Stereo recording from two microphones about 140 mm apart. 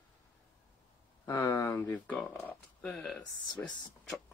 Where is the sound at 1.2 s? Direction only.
25° left (ahead or behind).